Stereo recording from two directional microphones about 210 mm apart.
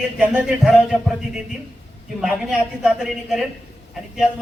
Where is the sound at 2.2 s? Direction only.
5° right (ahead or behind).